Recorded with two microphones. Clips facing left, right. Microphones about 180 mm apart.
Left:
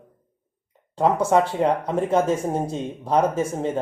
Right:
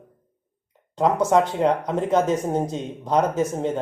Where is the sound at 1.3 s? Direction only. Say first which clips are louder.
Even; 5° left (ahead or behind).